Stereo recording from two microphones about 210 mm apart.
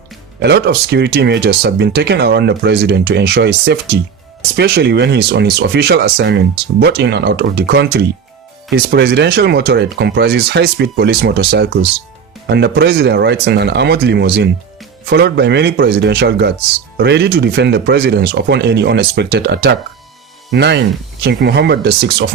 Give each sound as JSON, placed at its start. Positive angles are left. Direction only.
{"t": 0.3, "sound": "speech", "side_deg": -50}